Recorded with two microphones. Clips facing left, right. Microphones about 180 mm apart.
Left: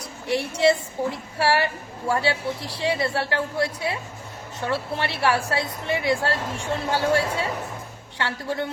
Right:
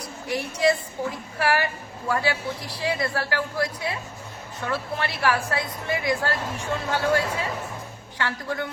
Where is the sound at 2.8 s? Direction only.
25° left (ahead or behind).